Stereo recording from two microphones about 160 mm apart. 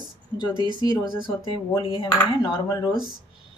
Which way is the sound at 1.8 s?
30° left (ahead or behind).